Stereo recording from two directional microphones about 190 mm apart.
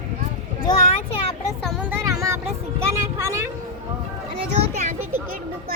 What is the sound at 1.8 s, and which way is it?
Vehicle, 15° right (ahead or behind).